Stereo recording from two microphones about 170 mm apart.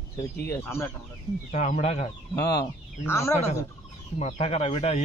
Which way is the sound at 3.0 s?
15° left (ahead or behind).